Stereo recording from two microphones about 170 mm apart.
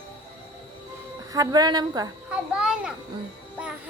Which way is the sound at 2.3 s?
5° right (ahead or behind).